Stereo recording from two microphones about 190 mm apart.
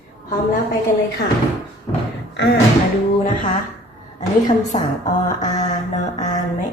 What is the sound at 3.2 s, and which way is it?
Speech, 45° left (ahead or behind).